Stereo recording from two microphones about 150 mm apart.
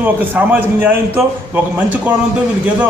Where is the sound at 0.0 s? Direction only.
10° right (ahead or behind).